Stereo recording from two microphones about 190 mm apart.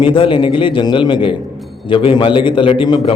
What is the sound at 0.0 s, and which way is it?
A man's voice, 25° left (ahead or behind).